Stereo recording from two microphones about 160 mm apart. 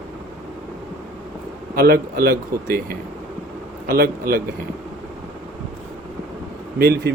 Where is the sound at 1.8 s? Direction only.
65° right (ahead or behind).